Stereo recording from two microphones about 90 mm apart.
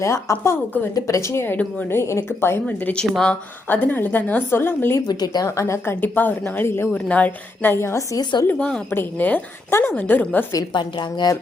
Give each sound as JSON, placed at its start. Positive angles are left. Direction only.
{"t": 0.0, "sound": "a woman's voice", "side_deg": 35}
{"t": 3.7, "sound": "a woman's voice", "side_deg": 20}
{"t": 5.0, "sound": "speech", "side_deg": 50}
{"t": 5.5, "sound": "a woman's voice", "side_deg": 30}
{"t": 6.9, "sound": "a woman's voice", "side_deg": 15}
{"t": 8.2, "sound": "speech", "side_deg": 55}
{"t": 8.5, "sound": "a woman's voice", "side_deg": 10}
{"t": 8.9, "sound": "a woman's voice", "side_deg": 25}
{"t": 10.7, "sound": "a woman's voice", "side_deg": 60}